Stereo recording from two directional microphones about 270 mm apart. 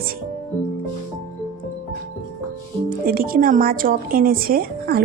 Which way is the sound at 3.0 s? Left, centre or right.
Right.